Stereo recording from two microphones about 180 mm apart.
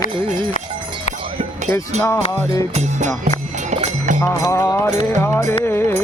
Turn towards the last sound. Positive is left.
turn(degrees=15)  # may be behind; listen again after turning